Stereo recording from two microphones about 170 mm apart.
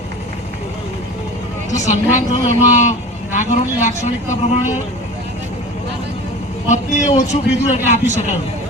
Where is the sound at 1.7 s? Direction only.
45° left (ahead or behind).